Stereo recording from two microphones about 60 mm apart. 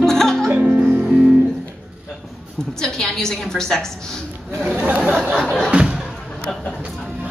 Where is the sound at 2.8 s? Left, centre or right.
Centre.